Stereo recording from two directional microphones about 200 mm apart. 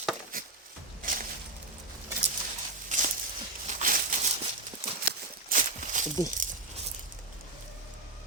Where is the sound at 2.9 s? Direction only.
35° right (ahead or behind).